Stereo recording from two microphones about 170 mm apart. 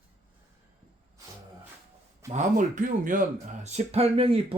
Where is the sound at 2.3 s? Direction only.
45° right (ahead or behind).